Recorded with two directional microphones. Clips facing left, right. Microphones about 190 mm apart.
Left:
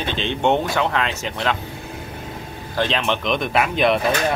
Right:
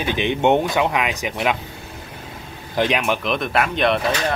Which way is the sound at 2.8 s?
15° right (ahead or behind).